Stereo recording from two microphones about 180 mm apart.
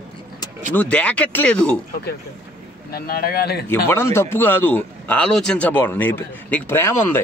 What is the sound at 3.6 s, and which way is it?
A man's voice, 15° left (ahead or behind).